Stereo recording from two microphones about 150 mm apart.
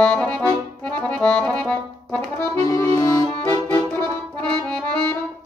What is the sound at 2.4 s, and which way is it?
Accordion, 20° left (ahead or behind).